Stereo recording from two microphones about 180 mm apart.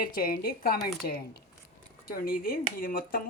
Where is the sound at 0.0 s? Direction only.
55° left (ahead or behind).